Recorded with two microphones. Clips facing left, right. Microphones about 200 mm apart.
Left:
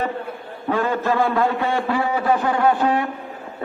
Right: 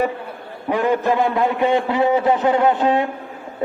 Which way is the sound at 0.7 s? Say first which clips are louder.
Right 3 dB; 15° right (ahead or behind).